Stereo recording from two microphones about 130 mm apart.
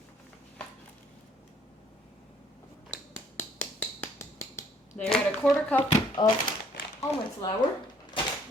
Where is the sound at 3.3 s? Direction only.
15° left (ahead or behind).